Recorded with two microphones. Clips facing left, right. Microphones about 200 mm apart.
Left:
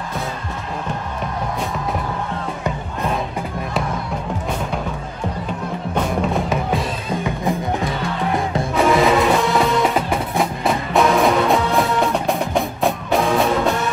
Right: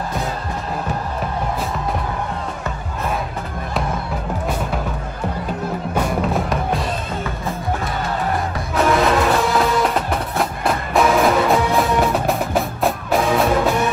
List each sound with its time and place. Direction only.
5.9 s music: centre (ahead or behind)
8.7 s music: centre (ahead or behind)